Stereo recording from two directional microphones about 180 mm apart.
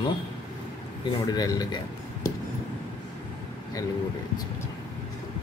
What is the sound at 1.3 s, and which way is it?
Speech, 20° left (ahead or behind).